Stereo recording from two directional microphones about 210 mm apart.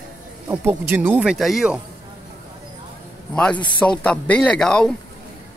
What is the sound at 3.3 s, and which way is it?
Speech, 5° left (ahead or behind).